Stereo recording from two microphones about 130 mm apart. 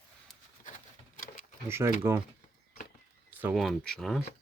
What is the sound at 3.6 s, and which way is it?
Speech, 5° left (ahead or behind).